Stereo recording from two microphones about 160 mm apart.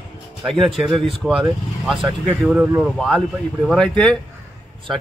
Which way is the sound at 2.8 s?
Centre (ahead or behind).